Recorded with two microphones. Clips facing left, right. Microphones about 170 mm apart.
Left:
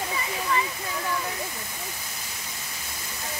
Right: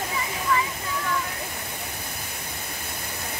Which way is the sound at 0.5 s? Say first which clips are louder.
Right 2 dB; 25° left (ahead or behind).